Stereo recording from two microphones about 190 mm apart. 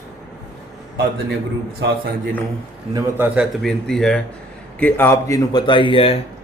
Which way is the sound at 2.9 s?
10° right (ahead or behind).